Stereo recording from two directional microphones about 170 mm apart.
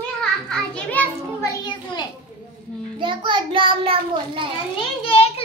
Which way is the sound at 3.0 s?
30° right (ahead or behind).